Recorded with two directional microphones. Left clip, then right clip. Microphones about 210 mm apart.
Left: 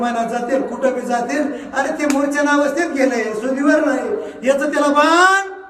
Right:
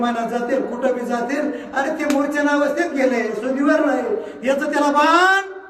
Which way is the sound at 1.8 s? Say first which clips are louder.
Left 2 dB; 5° left (ahead or behind).